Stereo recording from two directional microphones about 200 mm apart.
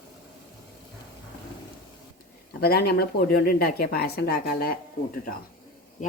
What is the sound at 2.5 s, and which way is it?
Speech, 50° left (ahead or behind).